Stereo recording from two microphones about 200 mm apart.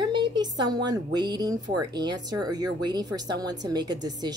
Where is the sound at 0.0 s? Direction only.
20° right (ahead or behind).